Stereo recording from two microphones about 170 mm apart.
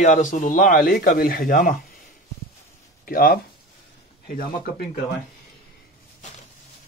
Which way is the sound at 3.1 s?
60° left (ahead or behind).